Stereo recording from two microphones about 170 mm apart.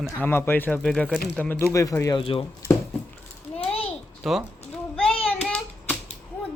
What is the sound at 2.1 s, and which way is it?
Speech, 30° left (ahead or behind).